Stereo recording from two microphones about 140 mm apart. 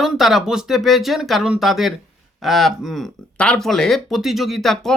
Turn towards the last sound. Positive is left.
turn(degrees=5)  # may be behind; listen again after turning